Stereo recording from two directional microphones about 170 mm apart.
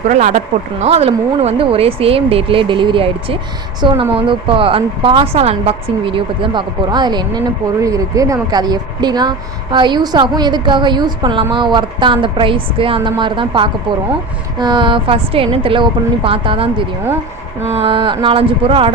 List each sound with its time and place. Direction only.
0.1 s a woman's voice: 45° right (ahead or behind)